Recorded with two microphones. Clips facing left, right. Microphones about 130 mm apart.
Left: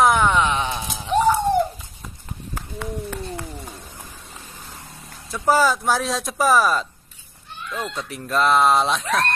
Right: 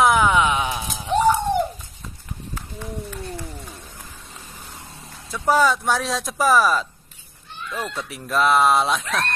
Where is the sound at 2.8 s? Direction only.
75° left (ahead or behind).